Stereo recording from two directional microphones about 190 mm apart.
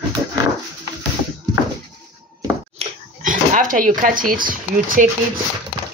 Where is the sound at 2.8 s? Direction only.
30° right (ahead or behind).